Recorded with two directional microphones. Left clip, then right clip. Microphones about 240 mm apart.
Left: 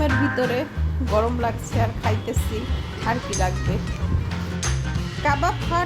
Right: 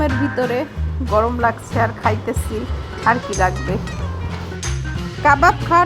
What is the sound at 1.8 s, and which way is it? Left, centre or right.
Speech, centre.